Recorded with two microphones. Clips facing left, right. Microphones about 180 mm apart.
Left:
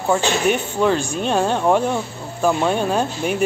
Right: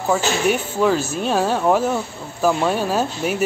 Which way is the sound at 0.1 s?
5° right (ahead or behind).